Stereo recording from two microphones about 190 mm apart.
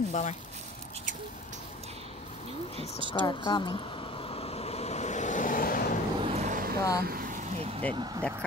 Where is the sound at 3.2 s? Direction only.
25° left (ahead or behind); by 5.8 s 45° left (ahead or behind).